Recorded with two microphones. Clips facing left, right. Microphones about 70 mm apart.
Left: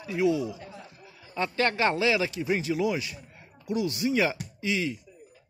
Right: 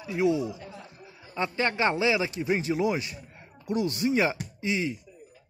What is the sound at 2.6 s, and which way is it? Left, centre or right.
Speech, right.